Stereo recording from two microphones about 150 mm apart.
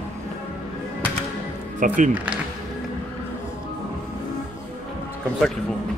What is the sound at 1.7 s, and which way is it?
Speech, 60° right (ahead or behind).